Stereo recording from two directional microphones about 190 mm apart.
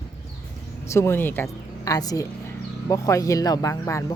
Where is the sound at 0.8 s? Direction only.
15° left (ahead or behind).